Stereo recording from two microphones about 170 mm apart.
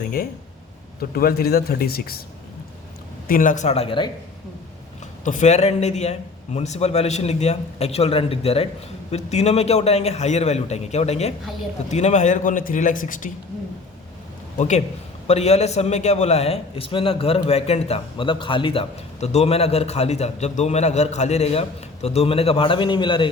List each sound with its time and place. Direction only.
1.1 s speech: 65° left (ahead or behind)
3.2 s a man's voice: 55° left (ahead or behind); by 4.1 s 30° left (ahead or behind)
5.2 s a man's voice: 45° left (ahead or behind)
15.3 s a man's voice: 40° left (ahead or behind)